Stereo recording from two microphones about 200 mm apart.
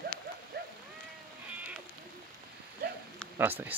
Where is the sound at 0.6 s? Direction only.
50° right (ahead or behind).